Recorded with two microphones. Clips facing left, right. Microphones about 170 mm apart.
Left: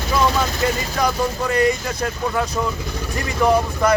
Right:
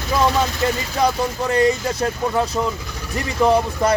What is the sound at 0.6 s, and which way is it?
A man's voice, 30° right (ahead or behind).